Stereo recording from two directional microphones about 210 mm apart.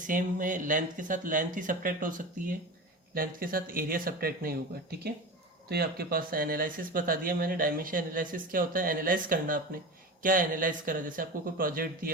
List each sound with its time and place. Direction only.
0.1 s speech: 40° right (ahead or behind)